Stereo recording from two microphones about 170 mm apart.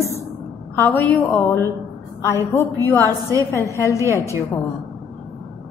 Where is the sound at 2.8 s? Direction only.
10° left (ahead or behind).